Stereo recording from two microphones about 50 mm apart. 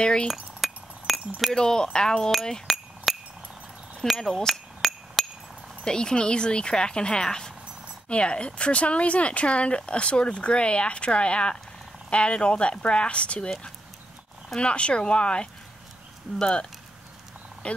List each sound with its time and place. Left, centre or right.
0.0 s speech: centre
0.3 s chink: centre
1.4 s speech: centre
2.6 s chink: centre
4.0 s speech: centre
4.8 s hammer: centre
5.9 s speech: centre
14.6 s speech: left
17.6 s speech: left